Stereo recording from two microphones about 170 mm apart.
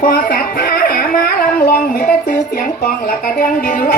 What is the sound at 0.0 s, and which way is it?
Music, 60° left (ahead or behind).